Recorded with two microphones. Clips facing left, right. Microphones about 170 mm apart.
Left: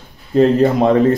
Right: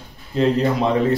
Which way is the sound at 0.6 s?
50° left (ahead or behind).